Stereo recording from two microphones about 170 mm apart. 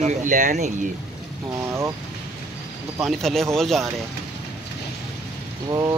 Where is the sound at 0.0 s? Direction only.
50° right (ahead or behind).